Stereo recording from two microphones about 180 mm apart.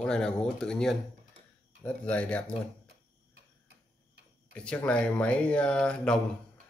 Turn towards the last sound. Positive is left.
turn(degrees=5)  # may be behind; listen again after turning